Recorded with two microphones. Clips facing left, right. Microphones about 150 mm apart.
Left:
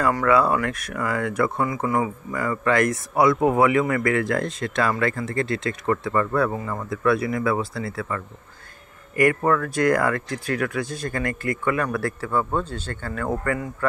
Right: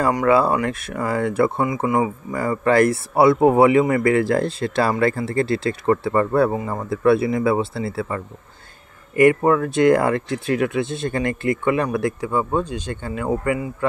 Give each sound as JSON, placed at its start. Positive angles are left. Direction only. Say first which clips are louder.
{"t": 0.3, "sound": "speech", "louder": "right 2 dB", "side_deg": -30}
{"t": 2.3, "sound": "speech", "louder": "right 4 dB", "side_deg": -30}